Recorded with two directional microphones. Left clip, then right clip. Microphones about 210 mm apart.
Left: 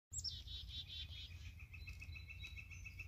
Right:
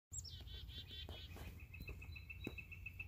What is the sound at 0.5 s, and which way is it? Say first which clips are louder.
Bird: left 4 dB; 45° left (ahead or behind).